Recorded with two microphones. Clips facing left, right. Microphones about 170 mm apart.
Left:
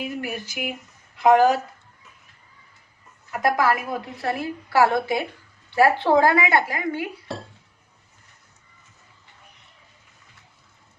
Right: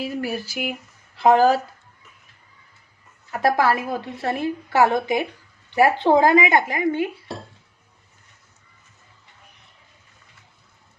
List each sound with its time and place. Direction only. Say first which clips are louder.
0.0 s speech: right 3 dB; 35° right (ahead or behind)
3.4 s a woman's voice: right 2 dB; 30° right (ahead or behind)